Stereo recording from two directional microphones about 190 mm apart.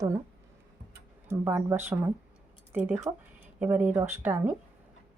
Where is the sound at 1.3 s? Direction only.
10° right (ahead or behind).